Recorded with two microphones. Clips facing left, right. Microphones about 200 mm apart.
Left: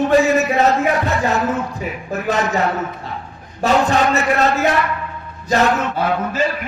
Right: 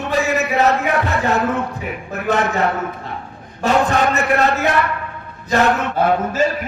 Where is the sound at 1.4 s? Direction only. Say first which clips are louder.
Right 1 dB; 60° right (ahead or behind).